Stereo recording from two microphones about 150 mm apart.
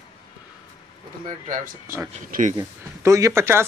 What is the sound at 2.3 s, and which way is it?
Speech, 60° right (ahead or behind).